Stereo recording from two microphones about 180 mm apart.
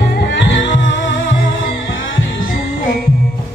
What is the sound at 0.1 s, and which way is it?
Music, 80° left.